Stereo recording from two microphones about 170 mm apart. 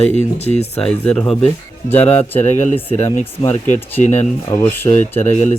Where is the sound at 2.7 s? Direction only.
35° left (ahead or behind).